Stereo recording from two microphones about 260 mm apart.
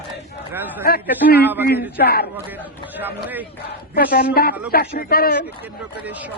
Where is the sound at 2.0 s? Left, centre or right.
Left.